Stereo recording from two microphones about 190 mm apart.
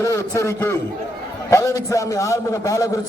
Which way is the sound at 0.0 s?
15° left (ahead or behind).